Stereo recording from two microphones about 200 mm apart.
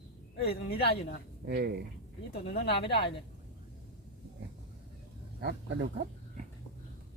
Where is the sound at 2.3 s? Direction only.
55° left (ahead or behind).